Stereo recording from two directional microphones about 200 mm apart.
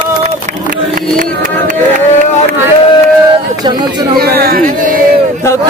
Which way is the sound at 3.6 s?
20° right (ahead or behind).